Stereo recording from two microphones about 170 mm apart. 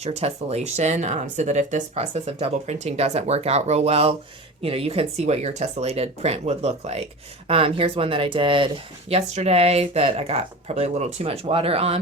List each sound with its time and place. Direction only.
0.0 s speech: 40° right (ahead or behind)